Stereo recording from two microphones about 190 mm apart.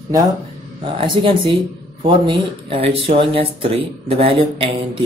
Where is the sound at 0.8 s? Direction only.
25° right (ahead or behind).